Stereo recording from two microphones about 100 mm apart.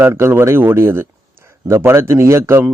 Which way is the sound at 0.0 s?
25° right (ahead or behind).